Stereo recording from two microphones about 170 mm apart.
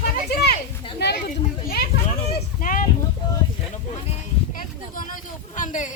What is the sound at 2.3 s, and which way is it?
Speech, 55° left (ahead or behind).